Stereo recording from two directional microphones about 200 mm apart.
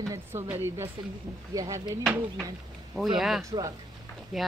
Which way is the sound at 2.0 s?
5° right (ahead or behind).